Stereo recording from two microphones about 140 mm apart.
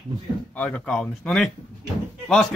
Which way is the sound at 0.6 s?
10° left (ahead or behind).